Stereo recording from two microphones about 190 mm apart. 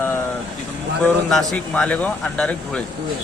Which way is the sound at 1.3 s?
5° left (ahead or behind).